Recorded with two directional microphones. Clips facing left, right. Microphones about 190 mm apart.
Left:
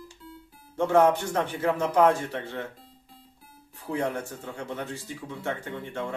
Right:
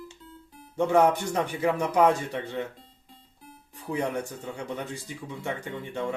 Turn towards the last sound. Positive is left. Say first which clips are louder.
# even
turn(degrees=-15)  # may be behind; listen again after turning